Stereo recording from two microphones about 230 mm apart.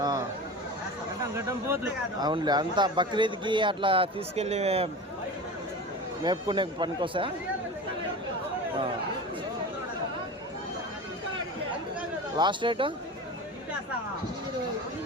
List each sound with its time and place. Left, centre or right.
1.4 s a man's voice: centre; by 4.9 s right
6.2 s a man's voice: centre
12.4 s a man's voice: right